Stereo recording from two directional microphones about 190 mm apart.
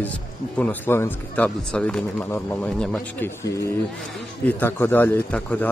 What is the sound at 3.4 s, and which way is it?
A man's voice, 15° left (ahead or behind).